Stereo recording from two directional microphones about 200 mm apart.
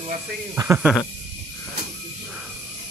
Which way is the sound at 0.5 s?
15° right (ahead or behind).